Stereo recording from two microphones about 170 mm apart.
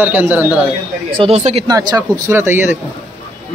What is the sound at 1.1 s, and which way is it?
Speech, 35° right (ahead or behind).